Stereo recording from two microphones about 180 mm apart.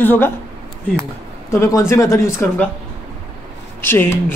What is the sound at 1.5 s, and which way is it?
A man's voice, 15° left (ahead or behind).